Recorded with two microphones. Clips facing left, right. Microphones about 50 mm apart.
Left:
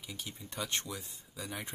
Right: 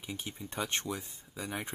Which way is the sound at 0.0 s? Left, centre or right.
Right.